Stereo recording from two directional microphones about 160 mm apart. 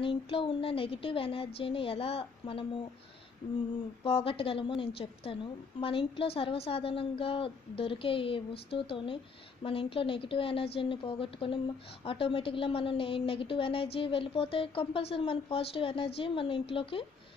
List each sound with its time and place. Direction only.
0.0 s a woman's voice: 30° left (ahead or behind)
4.0 s a woman's voice: 35° left (ahead or behind)